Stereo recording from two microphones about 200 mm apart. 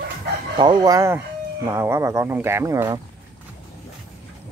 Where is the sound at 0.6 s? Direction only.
20° right (ahead or behind).